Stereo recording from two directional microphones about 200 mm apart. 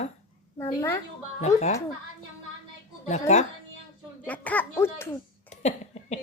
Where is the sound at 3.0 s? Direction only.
35° left (ahead or behind).